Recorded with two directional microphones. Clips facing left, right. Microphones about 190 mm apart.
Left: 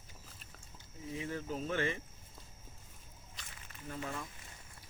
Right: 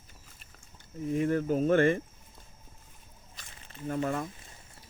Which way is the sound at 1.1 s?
55° right (ahead or behind).